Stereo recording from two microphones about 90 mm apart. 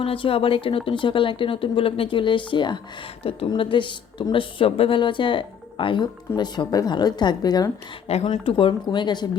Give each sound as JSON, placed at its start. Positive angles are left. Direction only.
{"t": 0.0, "sound": "speech", "side_deg": 90}
{"t": 3.2, "sound": "a woman's voice", "side_deg": 90}
{"t": 3.6, "sound": "a woman's voice", "side_deg": 65}
{"t": 8.3, "sound": "a woman's voice", "side_deg": 70}